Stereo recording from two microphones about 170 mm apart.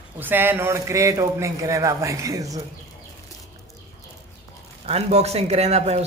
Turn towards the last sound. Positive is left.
turn(degrees=-40)  # may be behind; listen again after turning